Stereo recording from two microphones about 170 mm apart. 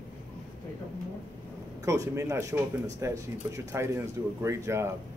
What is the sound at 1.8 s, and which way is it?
Speech, 20° right (ahead or behind).